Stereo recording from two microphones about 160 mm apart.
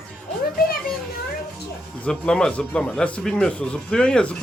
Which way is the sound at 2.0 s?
5° left (ahead or behind).